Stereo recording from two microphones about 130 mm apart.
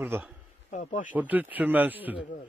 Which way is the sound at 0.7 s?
90° left.